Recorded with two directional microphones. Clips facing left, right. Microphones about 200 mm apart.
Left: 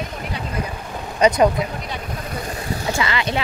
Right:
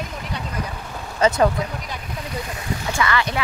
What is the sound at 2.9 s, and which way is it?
Speech, 20° left (ahead or behind).